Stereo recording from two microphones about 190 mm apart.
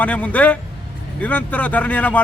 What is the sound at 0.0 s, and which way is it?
A man's voice, 10° left (ahead or behind).